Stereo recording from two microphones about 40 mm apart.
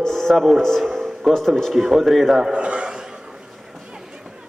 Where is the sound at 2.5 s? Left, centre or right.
Right.